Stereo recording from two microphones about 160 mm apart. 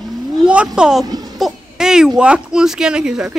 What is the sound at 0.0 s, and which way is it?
Vehicle, 5° right (ahead or behind).